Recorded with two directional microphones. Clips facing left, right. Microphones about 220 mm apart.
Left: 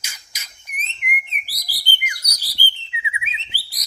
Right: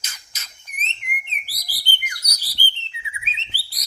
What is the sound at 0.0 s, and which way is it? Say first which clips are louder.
Bird: left 1 dB; 10° left (ahead or behind).